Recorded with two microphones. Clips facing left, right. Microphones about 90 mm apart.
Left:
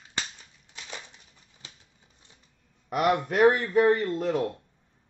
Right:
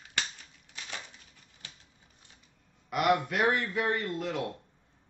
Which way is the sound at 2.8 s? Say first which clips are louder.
Left 2 dB; 40° left (ahead or behind).